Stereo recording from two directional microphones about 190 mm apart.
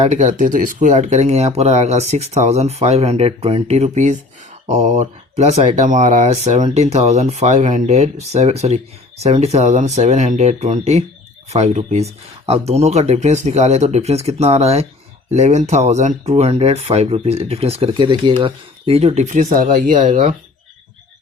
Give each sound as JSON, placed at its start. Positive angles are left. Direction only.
{"t": 0.0, "sound": "speech", "side_deg": -40}